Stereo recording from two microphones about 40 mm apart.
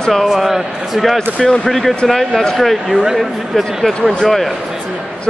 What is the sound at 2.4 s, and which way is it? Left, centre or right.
Speech, centre.